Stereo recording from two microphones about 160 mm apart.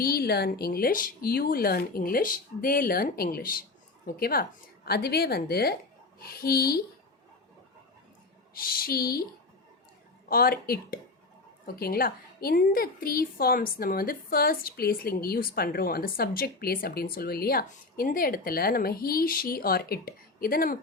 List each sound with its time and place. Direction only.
0.0 s a woman's voice: 75° left (ahead or behind)
4.9 s a woman's voice: 80° left
8.5 s a woman's voice: 65° left (ahead or behind)
10.2 s a woman's voice: 65° left (ahead or behind)